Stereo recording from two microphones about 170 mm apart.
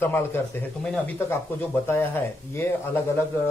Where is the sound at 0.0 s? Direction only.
10° left (ahead or behind).